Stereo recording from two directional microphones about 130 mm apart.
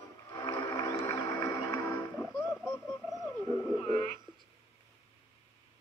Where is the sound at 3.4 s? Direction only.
25° left (ahead or behind).